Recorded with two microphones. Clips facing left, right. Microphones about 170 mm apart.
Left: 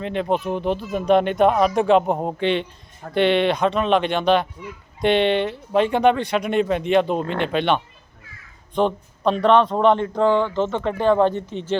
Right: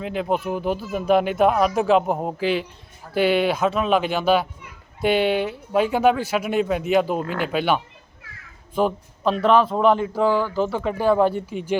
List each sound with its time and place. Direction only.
0.0 s speech: 5° right (ahead or behind)